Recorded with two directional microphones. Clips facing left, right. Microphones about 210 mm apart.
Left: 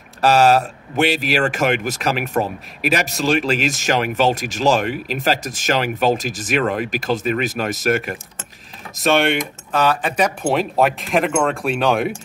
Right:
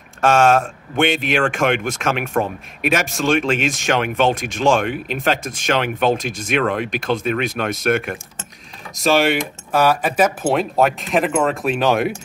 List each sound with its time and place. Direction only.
0.5 s speech: 5° left (ahead or behind)
4.4 s speech: 40° left (ahead or behind)
4.6 s speech: 5° left (ahead or behind)
5.4 s speech: 45° left (ahead or behind)
5.7 s speech: 5° left (ahead or behind)